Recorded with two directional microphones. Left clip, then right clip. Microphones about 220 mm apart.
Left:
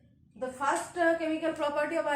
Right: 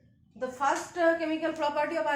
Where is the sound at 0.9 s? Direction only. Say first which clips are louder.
Right 1 dB; 20° right (ahead or behind).